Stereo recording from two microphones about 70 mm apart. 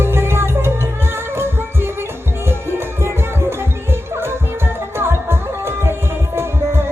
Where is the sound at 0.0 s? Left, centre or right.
Right.